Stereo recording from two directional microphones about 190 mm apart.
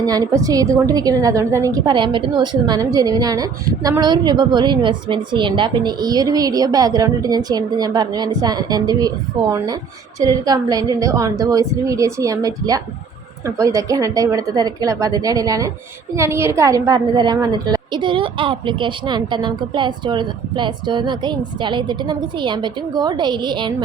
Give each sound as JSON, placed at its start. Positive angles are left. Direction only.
{"t": 0.0, "sound": "a woman's voice", "side_deg": -20}